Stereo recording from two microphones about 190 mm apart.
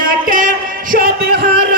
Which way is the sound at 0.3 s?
45° right (ahead or behind).